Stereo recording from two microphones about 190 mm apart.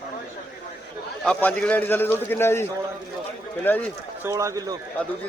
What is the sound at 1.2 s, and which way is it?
A man's voice, 5° left (ahead or behind).